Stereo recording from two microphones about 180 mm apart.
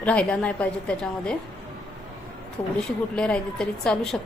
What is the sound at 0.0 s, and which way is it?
A woman's voice, 5° left (ahead or behind).